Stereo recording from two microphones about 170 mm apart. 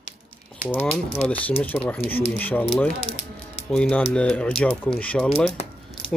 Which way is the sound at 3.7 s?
5° left (ahead or behind).